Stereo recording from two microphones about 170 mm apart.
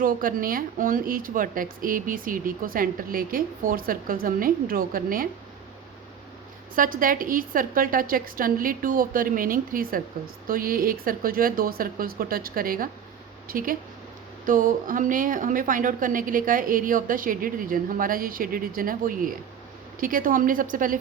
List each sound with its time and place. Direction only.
0.0 s a woman's voice: 55° right (ahead or behind)
6.7 s a woman's voice: 55° right (ahead or behind)